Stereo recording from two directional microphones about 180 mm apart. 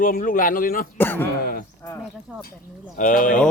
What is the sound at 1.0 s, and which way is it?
Speech, 10° left (ahead or behind).